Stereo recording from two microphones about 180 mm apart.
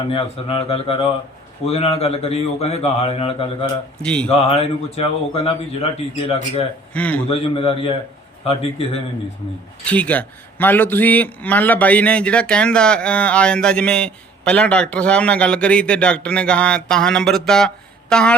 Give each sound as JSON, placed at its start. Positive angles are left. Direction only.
{"t": 0.1, "sound": "speech", "side_deg": 30}
{"t": 4.0, "sound": "speech", "side_deg": 5}
{"t": 4.3, "sound": "speech", "side_deg": 35}
{"t": 6.9, "sound": "a man's voice", "side_deg": 10}
{"t": 7.3, "sound": "speech", "side_deg": 30}
{"t": 9.8, "sound": "a man's voice", "side_deg": 10}